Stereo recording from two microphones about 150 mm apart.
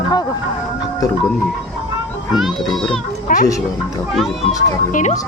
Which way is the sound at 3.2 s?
60° left (ahead or behind).